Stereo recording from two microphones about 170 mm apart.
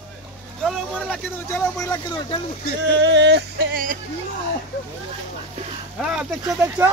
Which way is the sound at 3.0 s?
90° right.